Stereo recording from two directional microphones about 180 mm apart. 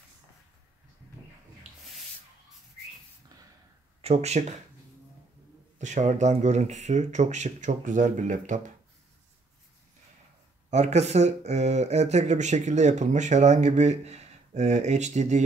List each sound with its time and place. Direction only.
4.0 s speech: 35° right (ahead or behind)
5.8 s speech: 45° right (ahead or behind)
10.7 s speech: 40° right (ahead or behind)